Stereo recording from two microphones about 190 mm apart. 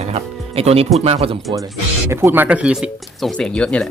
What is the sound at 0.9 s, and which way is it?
Speech, 30° right (ahead or behind).